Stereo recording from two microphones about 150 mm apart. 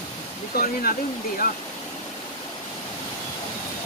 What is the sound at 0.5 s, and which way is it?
Speech, 75° left (ahead or behind).